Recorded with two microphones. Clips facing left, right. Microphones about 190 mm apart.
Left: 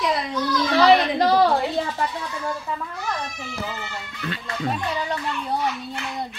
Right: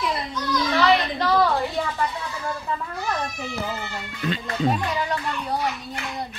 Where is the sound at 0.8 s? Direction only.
35° left (ahead or behind).